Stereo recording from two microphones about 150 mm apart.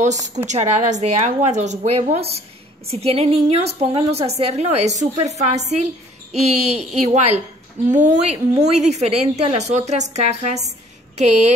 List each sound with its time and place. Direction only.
0.0 s a woman's voice: 50° right (ahead or behind)